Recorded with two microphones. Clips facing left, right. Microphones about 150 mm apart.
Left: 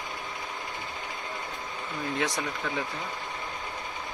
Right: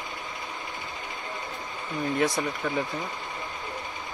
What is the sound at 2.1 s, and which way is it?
Speech, 10° right (ahead or behind).